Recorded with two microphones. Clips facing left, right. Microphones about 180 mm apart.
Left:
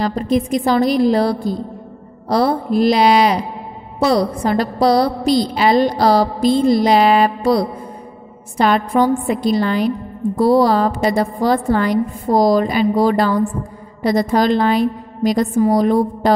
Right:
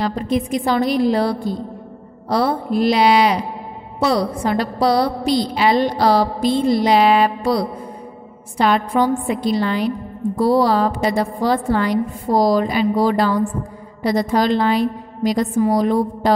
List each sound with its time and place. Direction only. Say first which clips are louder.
0.0 s a woman's voice: left 3 dB; 40° left (ahead or behind)